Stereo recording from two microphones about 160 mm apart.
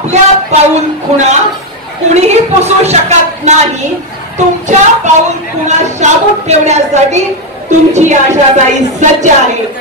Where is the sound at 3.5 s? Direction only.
45° right (ahead or behind).